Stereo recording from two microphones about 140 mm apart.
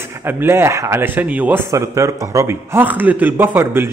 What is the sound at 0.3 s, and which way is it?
A man's voice, 15° right (ahead or behind).